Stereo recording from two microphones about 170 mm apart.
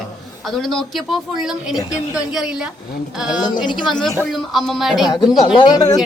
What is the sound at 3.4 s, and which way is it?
Speech, 25° left (ahead or behind).